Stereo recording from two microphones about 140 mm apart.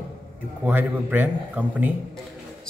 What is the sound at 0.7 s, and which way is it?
A man's voice, 10° right (ahead or behind).